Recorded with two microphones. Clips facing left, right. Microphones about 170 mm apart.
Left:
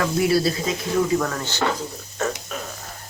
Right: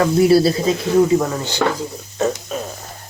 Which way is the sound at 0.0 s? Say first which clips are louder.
Right 7 dB; 30° right (ahead or behind).